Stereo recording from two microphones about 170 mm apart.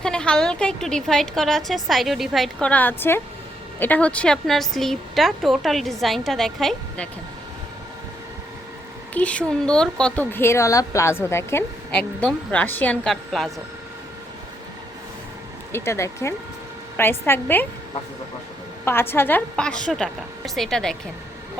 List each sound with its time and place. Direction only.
0.0 s a woman's voice: 5° left (ahead or behind)
9.1 s speech: 5° left (ahead or behind)
15.7 s speech: 15° left (ahead or behind)
18.9 s a woman's voice: 15° left (ahead or behind)